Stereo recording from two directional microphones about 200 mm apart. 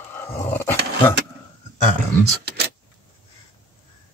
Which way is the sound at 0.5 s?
10° left (ahead or behind).